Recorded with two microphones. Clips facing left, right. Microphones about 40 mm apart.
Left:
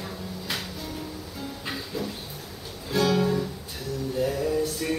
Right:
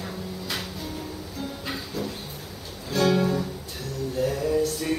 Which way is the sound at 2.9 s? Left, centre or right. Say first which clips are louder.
Right 1 dB; centre.